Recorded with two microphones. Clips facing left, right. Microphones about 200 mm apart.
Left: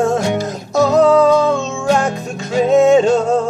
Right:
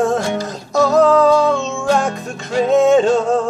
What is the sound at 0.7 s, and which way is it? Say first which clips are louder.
Music: left 1 dB; centre (ahead or behind).